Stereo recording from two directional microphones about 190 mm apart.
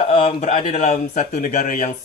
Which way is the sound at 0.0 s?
30° left (ahead or behind).